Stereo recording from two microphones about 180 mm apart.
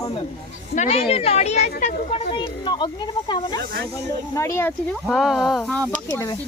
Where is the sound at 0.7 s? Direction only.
40° left (ahead or behind); by 4.7 s 15° left (ahead or behind).